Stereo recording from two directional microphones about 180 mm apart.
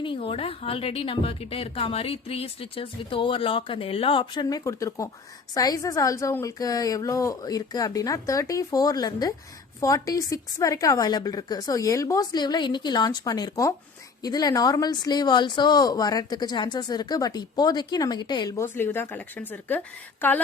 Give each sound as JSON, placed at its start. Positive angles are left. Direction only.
{"t": 0.0, "sound": "a woman's voice", "side_deg": 30}